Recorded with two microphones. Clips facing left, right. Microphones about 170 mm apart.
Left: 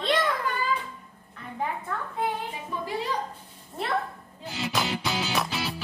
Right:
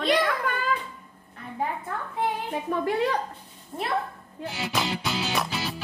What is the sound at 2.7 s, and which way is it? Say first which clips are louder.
Speech: right 7 dB; 50° right (ahead or behind).